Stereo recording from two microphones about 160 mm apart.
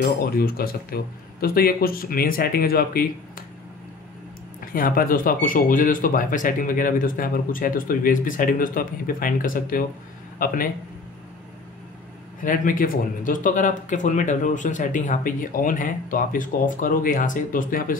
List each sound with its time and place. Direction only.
0.0 s speech: 70° left (ahead or behind)
4.6 s speech: 65° left (ahead or behind)
12.4 s speech: 60° left (ahead or behind)